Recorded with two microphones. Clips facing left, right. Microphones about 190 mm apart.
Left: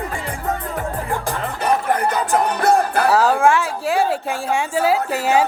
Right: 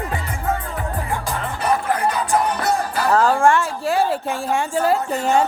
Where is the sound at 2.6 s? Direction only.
55° left (ahead or behind).